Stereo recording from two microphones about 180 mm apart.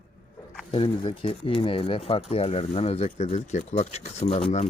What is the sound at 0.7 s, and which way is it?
Speech, 30° left (ahead or behind).